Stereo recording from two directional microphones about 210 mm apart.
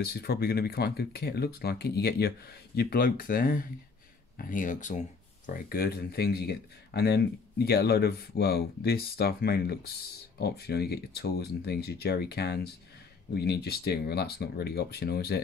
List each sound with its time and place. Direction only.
0.0 s speech: 50° left (ahead or behind)